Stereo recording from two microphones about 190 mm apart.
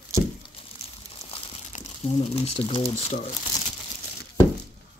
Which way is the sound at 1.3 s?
35° left (ahead or behind).